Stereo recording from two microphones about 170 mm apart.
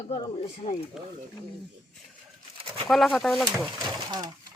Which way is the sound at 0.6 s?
40° left (ahead or behind).